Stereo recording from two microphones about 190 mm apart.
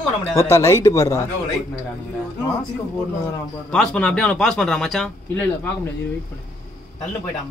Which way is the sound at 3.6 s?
5° left (ahead or behind).